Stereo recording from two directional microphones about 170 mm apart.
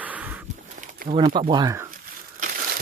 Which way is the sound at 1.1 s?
30° right (ahead or behind).